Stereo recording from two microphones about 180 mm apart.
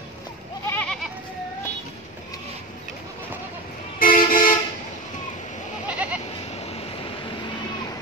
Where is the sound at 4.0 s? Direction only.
50° left (ahead or behind).